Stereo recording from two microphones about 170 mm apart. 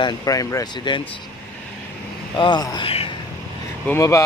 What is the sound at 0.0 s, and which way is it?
Speech, 20° left (ahead or behind).